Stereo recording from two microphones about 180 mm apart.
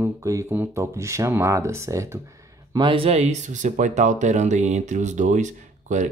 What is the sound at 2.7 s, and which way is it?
Speech, 30° right (ahead or behind).